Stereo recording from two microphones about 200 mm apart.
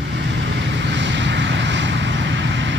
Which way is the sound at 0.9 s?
65° right (ahead or behind).